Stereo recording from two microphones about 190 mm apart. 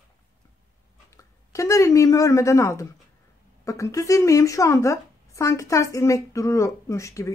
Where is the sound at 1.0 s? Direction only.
15° left (ahead or behind).